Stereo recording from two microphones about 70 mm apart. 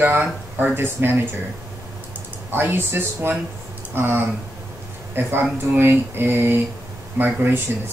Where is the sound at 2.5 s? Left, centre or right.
Right.